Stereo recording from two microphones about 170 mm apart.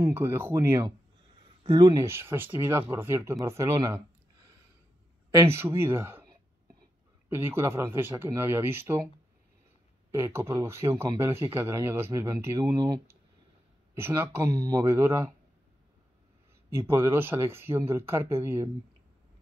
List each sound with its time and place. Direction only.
0.0 s speech: 15° right (ahead or behind)
5.3 s speech: 15° right (ahead or behind)
10.1 s speech: 15° right (ahead or behind)
16.7 s speech: 15° right (ahead or behind)